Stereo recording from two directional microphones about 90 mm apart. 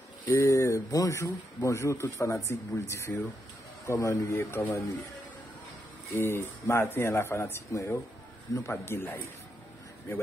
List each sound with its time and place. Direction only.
0.2 s speech: 30° left (ahead or behind)
6.1 s speech: 25° left (ahead or behind)